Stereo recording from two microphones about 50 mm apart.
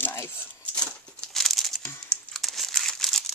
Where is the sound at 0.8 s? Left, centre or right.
Centre.